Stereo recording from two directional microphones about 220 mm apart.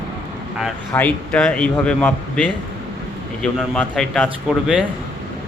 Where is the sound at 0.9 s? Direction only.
5° left (ahead or behind).